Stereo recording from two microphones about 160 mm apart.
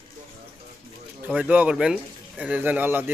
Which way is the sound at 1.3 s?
10° right (ahead or behind).